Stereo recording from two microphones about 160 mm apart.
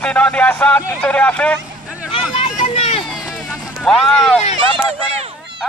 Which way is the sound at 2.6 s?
35° left (ahead or behind).